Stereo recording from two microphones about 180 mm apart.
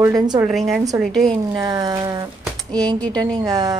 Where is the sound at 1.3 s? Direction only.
20° right (ahead or behind).